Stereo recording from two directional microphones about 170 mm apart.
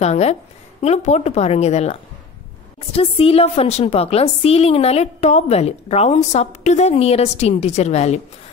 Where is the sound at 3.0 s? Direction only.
35° left (ahead or behind).